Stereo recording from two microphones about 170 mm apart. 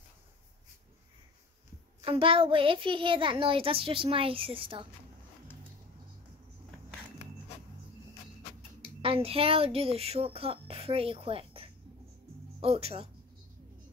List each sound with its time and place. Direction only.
2.0 s a child's voice: 30° right (ahead or behind)
9.0 s speech: 35° right (ahead or behind)